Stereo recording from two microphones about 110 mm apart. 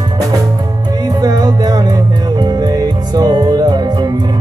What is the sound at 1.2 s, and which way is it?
Music, 35° right (ahead or behind).